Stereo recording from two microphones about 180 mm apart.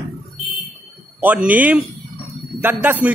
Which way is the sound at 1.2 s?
10° right (ahead or behind).